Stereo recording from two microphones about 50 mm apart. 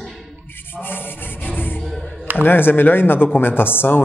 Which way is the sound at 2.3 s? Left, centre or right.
Left.